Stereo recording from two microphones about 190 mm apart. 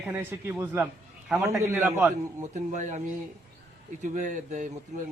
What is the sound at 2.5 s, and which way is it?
Speech, 40° right (ahead or behind).